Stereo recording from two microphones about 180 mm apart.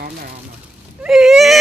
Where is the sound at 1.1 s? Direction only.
Centre (ahead or behind).